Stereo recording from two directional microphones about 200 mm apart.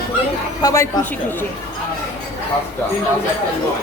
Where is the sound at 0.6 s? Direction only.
20° left (ahead or behind).